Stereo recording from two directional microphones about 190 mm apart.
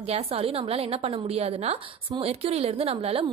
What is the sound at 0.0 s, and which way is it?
A woman's voice, 30° right (ahead or behind).